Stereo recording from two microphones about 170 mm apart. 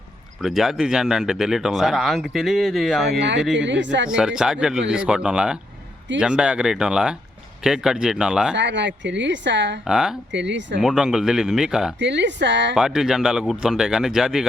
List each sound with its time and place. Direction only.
0.4 s speech: centre (ahead or behind)
3.1 s a woman's voice: 90° right
4.1 s speech: 5° right (ahead or behind)
8.5 s a woman's voice: 90° right
9.8 s speech: 5° right (ahead or behind)
10.3 s a woman's voice: 90° right
10.8 s speech: 5° right (ahead or behind)
11.9 s a woman's voice: 90° right
12.7 s speech: 5° right (ahead or behind)